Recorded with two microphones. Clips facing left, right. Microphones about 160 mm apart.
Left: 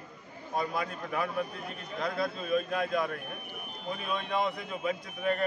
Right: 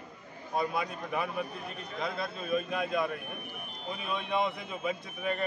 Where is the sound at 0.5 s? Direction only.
Centre (ahead or behind).